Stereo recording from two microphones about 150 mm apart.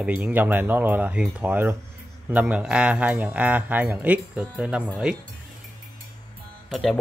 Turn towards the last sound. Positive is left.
turn(degrees=0)  # may be behind; listen again after turning